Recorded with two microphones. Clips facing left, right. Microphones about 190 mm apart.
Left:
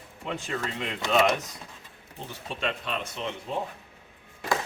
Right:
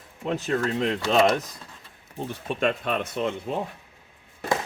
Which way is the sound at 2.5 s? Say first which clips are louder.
Right 6 dB; 50° right (ahead or behind).